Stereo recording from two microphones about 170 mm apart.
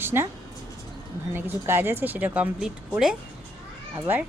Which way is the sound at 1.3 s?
15° right (ahead or behind).